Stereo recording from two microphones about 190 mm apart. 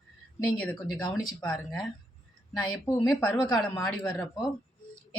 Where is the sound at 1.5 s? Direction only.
Centre (ahead or behind).